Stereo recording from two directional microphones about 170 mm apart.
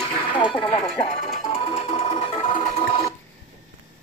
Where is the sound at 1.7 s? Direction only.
35° left (ahead or behind).